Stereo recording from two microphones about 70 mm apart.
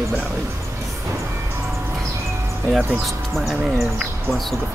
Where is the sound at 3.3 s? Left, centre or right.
Centre.